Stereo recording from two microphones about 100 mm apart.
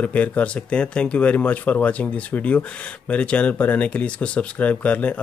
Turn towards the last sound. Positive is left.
turn(degrees=15)  # may be behind; listen again after turning